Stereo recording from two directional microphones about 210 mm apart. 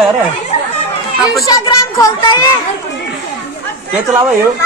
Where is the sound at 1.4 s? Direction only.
15° left (ahead or behind).